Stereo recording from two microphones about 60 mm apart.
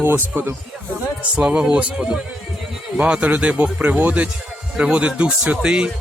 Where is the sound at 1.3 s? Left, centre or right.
Centre.